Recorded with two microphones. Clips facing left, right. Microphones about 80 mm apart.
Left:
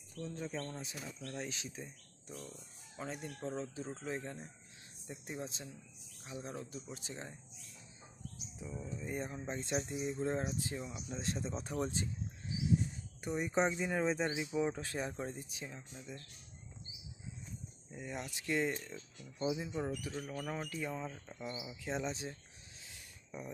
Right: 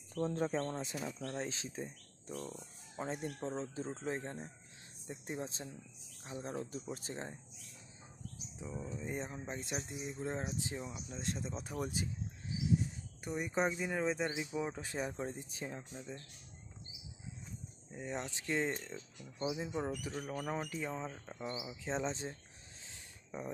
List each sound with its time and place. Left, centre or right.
0.4 s speech: right
8.5 s speech: centre
9.4 s speech: centre
10.2 s speech: centre
11.1 s speech: centre
13.2 s speech: centre
14.8 s speech: centre
15.5 s speech: right
15.9 s speech: right
17.9 s speech: right
22.8 s a sound: right